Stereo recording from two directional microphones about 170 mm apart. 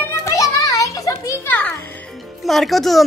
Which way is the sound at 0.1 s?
20° left (ahead or behind).